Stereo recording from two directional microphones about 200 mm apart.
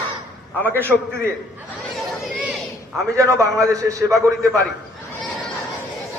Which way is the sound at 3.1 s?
15° right (ahead or behind).